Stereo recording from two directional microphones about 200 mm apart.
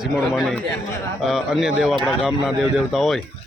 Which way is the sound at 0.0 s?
Centre (ahead or behind).